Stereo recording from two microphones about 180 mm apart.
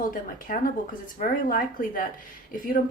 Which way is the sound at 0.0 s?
50° left (ahead or behind).